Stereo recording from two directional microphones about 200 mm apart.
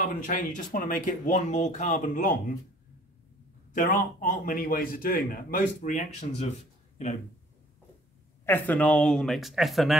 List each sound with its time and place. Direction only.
0.0 s speech: 40° left (ahead or behind)
3.7 s a man's voice: 40° left (ahead or behind)
8.5 s speech: 10° left (ahead or behind)